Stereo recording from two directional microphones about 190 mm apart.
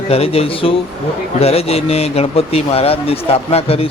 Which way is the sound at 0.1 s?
30° left (ahead or behind).